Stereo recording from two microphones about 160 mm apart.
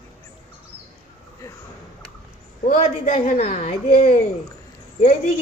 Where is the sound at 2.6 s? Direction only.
50° left (ahead or behind).